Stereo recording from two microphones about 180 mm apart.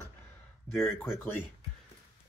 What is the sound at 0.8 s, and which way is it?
Speech, centre (ahead or behind).